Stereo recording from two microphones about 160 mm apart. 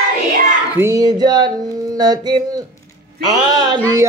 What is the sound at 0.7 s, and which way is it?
Speech, 20° right (ahead or behind).